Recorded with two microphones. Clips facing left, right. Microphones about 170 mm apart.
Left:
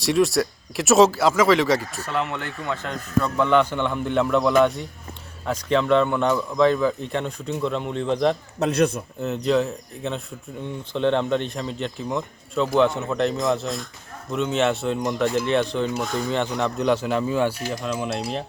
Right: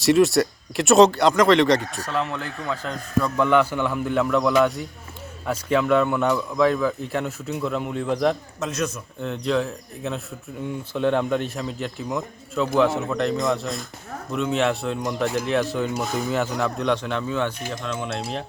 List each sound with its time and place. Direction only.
0.0 s speech: centre (ahead or behind)
8.6 s a man's voice: 65° left (ahead or behind)
9.2 s speech: 5° left (ahead or behind)